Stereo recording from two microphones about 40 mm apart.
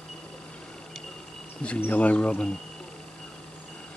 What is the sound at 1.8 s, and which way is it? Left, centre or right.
Speech, left.